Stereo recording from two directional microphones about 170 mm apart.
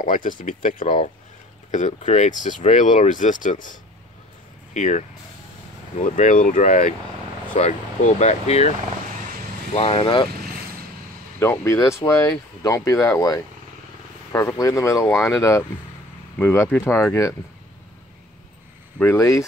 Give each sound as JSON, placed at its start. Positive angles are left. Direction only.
{"t": 0.0, "sound": "speech", "side_deg": 50}
{"t": 4.7, "sound": "speech", "side_deg": 45}
{"t": 6.0, "sound": "speech", "side_deg": 50}
{"t": 11.3, "sound": "speech", "side_deg": 15}
{"t": 18.9, "sound": "speech", "side_deg": 15}